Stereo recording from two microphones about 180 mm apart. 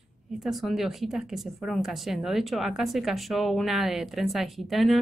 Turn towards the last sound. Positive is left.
turn(degrees=0)  # may be behind; listen again after turning